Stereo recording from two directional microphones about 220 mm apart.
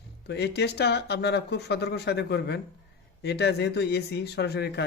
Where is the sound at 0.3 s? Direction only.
50° left (ahead or behind).